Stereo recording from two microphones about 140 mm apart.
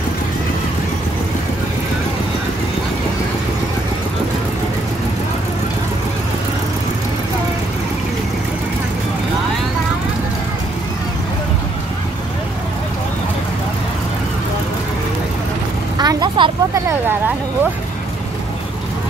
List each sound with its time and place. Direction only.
16.0 s vehicle: 30° right (ahead or behind)